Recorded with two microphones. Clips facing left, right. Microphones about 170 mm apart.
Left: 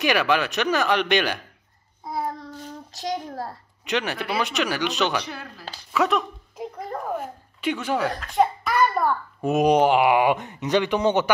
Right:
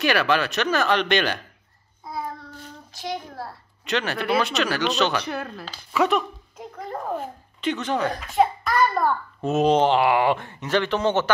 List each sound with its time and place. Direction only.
0.0 s speech: 15° left (ahead or behind)
2.1 s child singing: 35° left (ahead or behind)
3.8 s speech: 15° left (ahead or behind)
5.2 s speech: 55° right (ahead or behind)
5.9 s speech: centre (ahead or behind)
7.2 s a sound: 10° left (ahead or behind)
8.2 s a child's voice: 5° right (ahead or behind)
8.7 s a child's voice: 10° left (ahead or behind)